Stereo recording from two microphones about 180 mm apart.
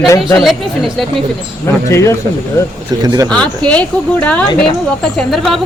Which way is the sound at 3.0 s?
20° right (ahead or behind).